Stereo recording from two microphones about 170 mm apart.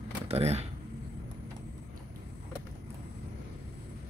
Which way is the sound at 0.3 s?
40° right (ahead or behind).